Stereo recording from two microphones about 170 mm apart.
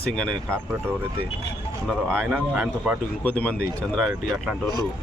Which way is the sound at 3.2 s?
10° left (ahead or behind).